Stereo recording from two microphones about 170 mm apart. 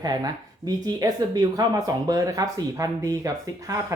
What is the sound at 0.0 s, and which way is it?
Speech, 25° right (ahead or behind).